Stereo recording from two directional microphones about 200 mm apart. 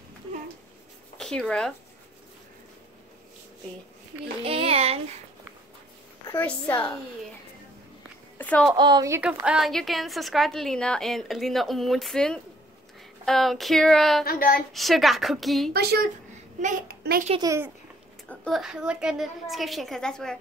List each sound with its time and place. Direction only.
1.1 s speech: centre (ahead or behind)
4.5 s a child's voice: 30° right (ahead or behind)
6.2 s a woman's voice: 10° left (ahead or behind)
8.4 s a sound: 5° left (ahead or behind)
8.7 s speech: 20° right (ahead or behind)
9.2 s a woman's voice: 5° right (ahead or behind)
14.2 s child singing: 45° left (ahead or behind)
14.7 s a woman's voice: centre (ahead or behind)
15.7 s a child's voice: 55° right (ahead or behind)
17.3 s speech: 20° right (ahead or behind)
18.3 s a woman's voice: centre (ahead or behind)